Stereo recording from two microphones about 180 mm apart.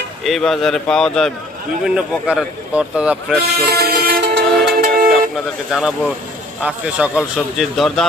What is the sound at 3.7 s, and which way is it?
Music, 65° right (ahead or behind).